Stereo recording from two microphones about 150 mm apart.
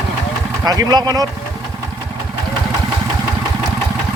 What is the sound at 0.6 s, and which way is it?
Speech, 25° right (ahead or behind).